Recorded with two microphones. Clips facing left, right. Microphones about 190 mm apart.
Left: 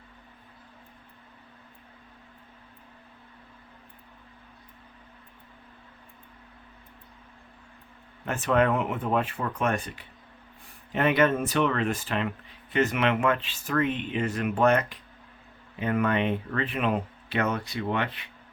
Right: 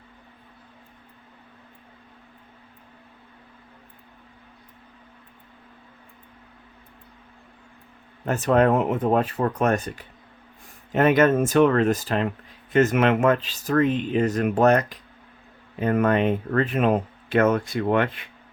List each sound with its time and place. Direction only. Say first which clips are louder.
8.2 s speech: right 5 dB; 40° right (ahead or behind)